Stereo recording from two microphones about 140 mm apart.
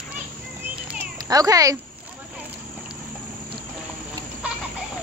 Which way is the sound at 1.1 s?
25° right (ahead or behind).